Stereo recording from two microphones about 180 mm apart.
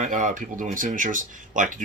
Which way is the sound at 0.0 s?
45° right (ahead or behind).